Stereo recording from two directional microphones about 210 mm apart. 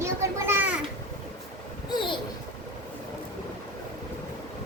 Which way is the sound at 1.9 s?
20° left (ahead or behind).